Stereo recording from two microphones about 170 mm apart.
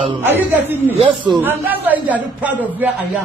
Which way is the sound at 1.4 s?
10° right (ahead or behind).